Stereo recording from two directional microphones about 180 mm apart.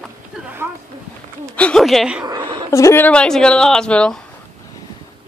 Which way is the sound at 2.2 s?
25° right (ahead or behind).